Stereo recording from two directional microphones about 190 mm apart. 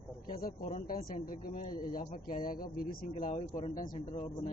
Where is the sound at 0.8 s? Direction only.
50° left (ahead or behind).